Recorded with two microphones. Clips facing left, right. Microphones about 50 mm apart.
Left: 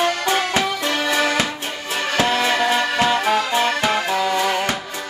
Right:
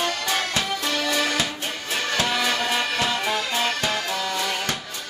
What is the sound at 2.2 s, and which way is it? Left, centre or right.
Music, left.